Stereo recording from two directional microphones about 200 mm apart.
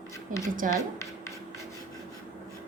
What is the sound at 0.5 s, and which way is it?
Speech, 45° right (ahead or behind).